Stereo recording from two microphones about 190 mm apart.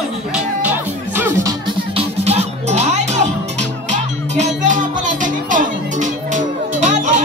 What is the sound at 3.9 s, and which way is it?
Music, 40° right (ahead or behind).